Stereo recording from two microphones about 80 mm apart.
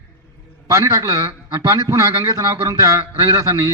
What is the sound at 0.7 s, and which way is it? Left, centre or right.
A man's voice, right.